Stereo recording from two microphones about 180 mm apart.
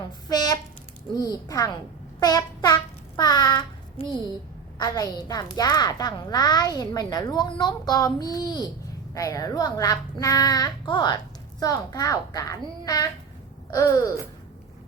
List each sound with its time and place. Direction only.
0.3 s a child's voice: 20° left (ahead or behind)